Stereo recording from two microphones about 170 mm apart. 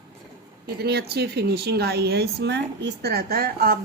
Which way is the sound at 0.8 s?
70° right (ahead or behind).